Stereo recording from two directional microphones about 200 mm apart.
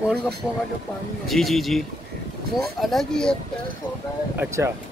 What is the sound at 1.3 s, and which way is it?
Speech, centre (ahead or behind).